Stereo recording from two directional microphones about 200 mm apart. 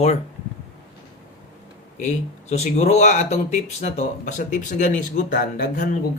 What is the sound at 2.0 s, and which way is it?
Speech, 35° left (ahead or behind).